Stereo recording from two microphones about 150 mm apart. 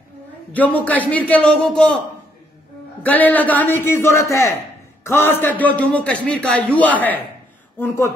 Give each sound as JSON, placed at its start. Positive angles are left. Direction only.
{"t": 0.5, "sound": "a man's voice", "side_deg": 10}
{"t": 3.0, "sound": "a man's voice", "side_deg": 10}